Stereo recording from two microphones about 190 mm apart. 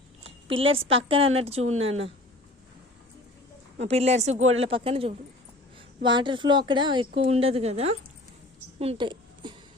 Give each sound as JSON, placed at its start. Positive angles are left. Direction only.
{"t": 0.7, "sound": "a woman's voice", "side_deg": -30}
{"t": 3.8, "sound": "a woman's voice", "side_deg": -35}
{"t": 8.8, "sound": "a sound", "side_deg": -30}